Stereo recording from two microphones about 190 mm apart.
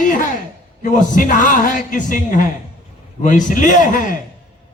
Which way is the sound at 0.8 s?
45° left (ahead or behind).